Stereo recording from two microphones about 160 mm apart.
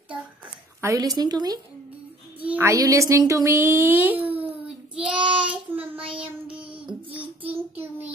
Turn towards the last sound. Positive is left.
turn(degrees=-10)  # may be behind; listen again after turning